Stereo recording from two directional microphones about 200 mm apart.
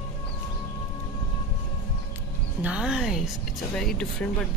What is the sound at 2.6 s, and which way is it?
Speech, 5° right (ahead or behind).